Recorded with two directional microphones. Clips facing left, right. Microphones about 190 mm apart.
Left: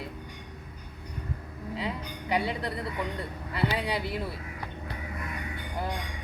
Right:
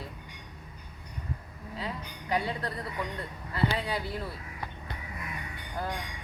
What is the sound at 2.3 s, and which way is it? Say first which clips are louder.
Speech: left 2 dB; 15° left (ahead or behind).